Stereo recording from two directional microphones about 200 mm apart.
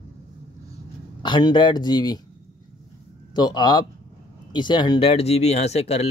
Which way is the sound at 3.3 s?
20° left (ahead or behind).